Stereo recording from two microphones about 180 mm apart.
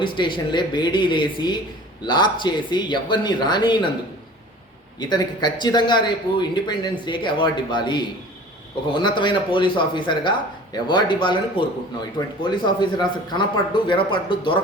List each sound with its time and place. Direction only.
0.0 s speech: 25° left (ahead or behind)
4.9 s speech: 25° left (ahead or behind)